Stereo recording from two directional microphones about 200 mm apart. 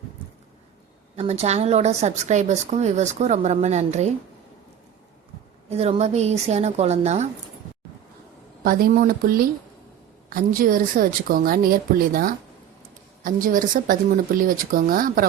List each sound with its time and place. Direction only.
1.1 s speech: 30° right (ahead or behind)
5.6 s speech: 30° right (ahead or behind)
8.6 s a woman's voice: 45° right (ahead or behind)